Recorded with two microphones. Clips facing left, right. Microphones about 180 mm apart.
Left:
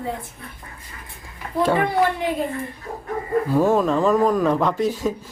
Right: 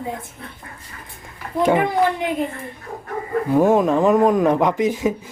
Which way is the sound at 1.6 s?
15° right (ahead or behind).